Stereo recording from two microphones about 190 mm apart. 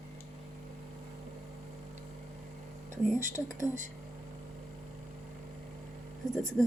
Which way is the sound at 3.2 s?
40° right (ahead or behind).